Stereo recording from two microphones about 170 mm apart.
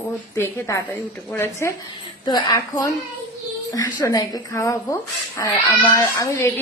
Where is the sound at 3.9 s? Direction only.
20° left (ahead or behind).